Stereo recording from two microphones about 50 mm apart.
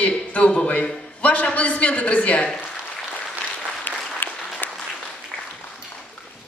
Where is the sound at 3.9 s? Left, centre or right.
Left.